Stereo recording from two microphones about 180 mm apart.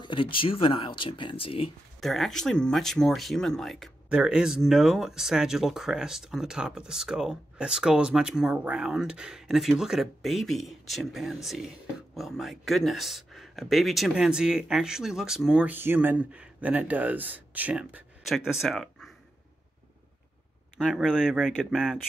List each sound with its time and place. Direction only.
0.0 s speech: 30° left (ahead or behind)
2.0 s speech: centre (ahead or behind)
20.7 s speech: 5° right (ahead or behind)